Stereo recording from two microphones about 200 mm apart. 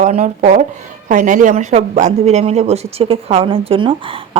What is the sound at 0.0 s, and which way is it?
A woman's voice, 35° right (ahead or behind).